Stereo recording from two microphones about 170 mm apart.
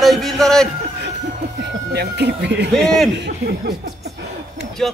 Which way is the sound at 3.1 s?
80° right.